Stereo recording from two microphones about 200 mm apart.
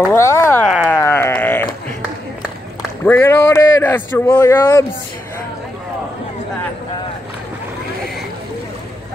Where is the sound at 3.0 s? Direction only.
10° left (ahead or behind).